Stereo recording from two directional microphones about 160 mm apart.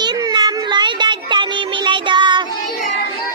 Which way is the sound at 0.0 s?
25° right (ahead or behind).